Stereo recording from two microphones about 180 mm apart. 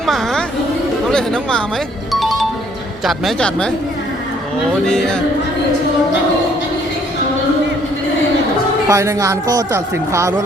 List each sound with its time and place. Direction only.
0.0 s music: centre (ahead or behind)
1.1 s speech: 5° left (ahead or behind)
2.1 s music: centre (ahead or behind)
3.0 s speech: centre (ahead or behind)
4.9 s speech: 5° left (ahead or behind)
8.9 s a woman's voice: 15° right (ahead or behind)